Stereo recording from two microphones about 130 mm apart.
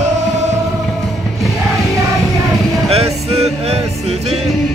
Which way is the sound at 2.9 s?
55° right (ahead or behind).